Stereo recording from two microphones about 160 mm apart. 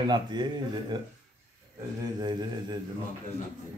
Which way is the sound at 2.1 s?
25° right (ahead or behind).